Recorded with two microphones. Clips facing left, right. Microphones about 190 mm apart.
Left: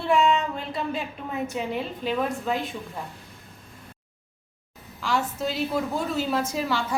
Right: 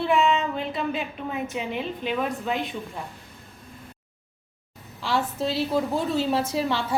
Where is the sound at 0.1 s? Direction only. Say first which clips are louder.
Left 3 dB; centre (ahead or behind).